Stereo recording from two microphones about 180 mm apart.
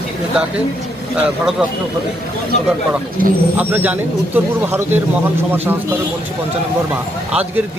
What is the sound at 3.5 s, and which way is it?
Speech, 10° right (ahead or behind).